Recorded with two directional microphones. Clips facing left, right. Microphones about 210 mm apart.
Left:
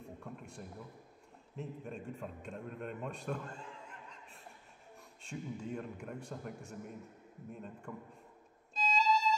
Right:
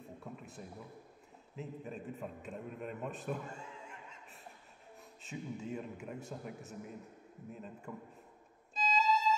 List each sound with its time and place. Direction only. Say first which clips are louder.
0.0 s a sound: even; 5° right (ahead or behind)
1.6 s a man's voice: even; 5° right (ahead or behind)
8.7 s violin: right 1 dB; 5° right (ahead or behind)